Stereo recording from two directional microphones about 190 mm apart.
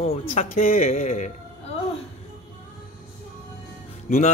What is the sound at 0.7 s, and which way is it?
Speech, 45° left (ahead or behind).